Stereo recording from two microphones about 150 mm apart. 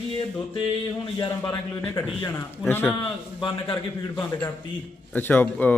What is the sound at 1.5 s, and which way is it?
A man's voice, 15° left (ahead or behind).